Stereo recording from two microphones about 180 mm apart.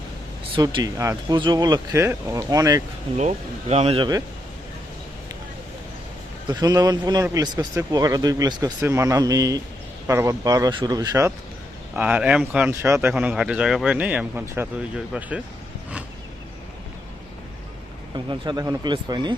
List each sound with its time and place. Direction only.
0.5 s speech: 20° right (ahead or behind)
3.2 s speech: 40° right (ahead or behind)
6.5 s speech: 20° right (ahead or behind)
11.9 s speech: 5° right (ahead or behind)
18.1 s speech: 25° right (ahead or behind)